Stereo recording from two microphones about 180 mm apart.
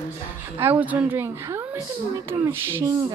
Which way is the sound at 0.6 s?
10° right (ahead or behind).